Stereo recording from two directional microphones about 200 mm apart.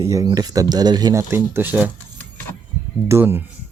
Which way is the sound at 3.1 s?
10° right (ahead or behind).